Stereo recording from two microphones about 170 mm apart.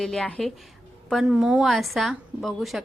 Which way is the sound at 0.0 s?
5° left (ahead or behind).